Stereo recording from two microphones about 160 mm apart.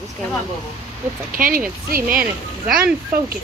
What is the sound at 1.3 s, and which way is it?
Speech, 60° right (ahead or behind).